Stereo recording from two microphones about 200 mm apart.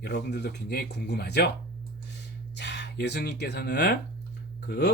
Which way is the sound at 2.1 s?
60° left (ahead or behind).